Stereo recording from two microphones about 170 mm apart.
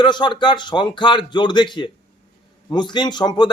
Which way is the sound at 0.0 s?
25° left (ahead or behind).